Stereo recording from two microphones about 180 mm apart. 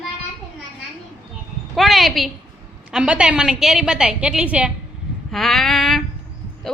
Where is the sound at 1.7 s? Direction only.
Centre (ahead or behind).